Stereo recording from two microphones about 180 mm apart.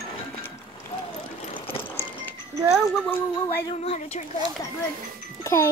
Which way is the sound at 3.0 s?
10° left (ahead or behind).